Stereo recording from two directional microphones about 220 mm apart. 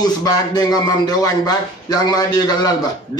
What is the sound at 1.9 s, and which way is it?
Speech, 15° left (ahead or behind).